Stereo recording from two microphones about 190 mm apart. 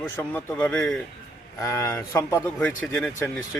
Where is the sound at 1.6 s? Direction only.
15° left (ahead or behind).